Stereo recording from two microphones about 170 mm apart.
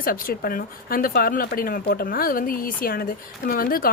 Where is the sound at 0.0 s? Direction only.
60° left (ahead or behind).